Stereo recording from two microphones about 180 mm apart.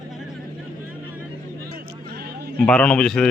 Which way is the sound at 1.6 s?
60° right (ahead or behind).